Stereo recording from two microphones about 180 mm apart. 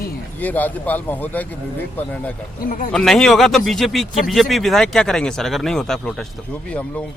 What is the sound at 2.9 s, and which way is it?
Speech, centre (ahead or behind).